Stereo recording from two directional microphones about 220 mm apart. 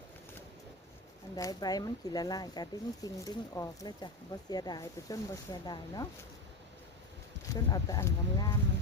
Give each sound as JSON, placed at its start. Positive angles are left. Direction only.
{"t": 1.4, "sound": "speech", "side_deg": 15}
{"t": 7.5, "sound": "speech", "side_deg": 15}